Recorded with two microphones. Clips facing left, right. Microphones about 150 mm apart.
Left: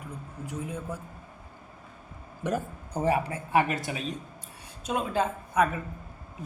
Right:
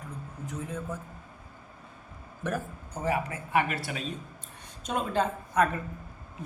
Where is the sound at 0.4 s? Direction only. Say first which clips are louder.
Left 1 dB; 10° left (ahead or behind).